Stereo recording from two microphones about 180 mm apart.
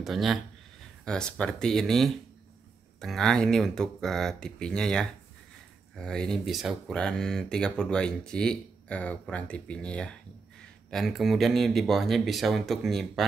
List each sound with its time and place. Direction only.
0.0 s speech: centre (ahead or behind)